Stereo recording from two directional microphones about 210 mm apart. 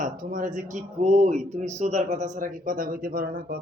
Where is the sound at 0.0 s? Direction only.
40° right (ahead or behind).